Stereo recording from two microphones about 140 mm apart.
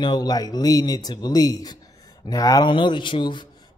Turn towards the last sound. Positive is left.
turn(degrees=35)  # may be behind; listen again after turning